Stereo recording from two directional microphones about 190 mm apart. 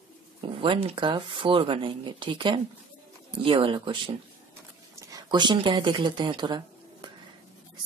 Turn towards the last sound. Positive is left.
turn(degrees=-25)  # may be behind; listen again after turning